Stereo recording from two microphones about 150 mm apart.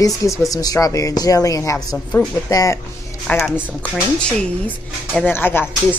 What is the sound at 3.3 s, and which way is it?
Speech, 10° left (ahead or behind).